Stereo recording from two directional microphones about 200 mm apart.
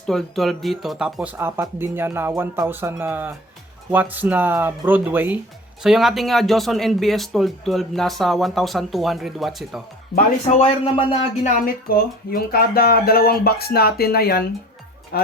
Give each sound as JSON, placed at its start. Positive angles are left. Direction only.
{"t": 0.1, "sound": "speech", "side_deg": 0}
{"t": 10.6, "sound": "speech", "side_deg": 25}